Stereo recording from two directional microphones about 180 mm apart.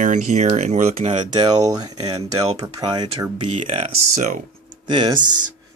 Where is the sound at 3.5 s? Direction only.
40° right (ahead or behind).